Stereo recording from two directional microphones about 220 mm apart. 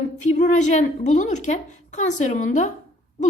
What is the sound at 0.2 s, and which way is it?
A woman's voice, 35° left (ahead or behind).